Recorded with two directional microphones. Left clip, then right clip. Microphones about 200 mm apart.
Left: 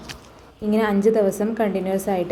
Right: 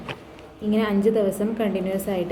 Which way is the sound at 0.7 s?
15° left (ahead or behind).